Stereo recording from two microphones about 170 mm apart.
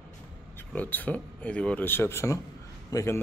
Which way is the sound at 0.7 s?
10° left (ahead or behind).